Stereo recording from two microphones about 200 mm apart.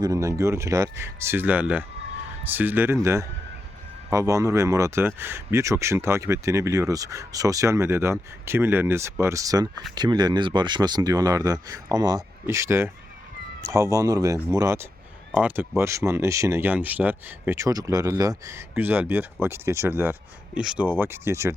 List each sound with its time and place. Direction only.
0.0 s speech: 15° right (ahead or behind)